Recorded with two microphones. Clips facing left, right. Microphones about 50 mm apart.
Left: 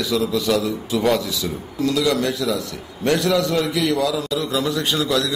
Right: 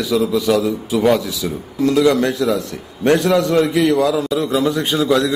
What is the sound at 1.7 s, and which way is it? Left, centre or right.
A man's voice, right.